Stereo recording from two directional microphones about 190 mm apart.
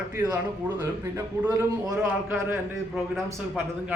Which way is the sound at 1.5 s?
15° right (ahead or behind).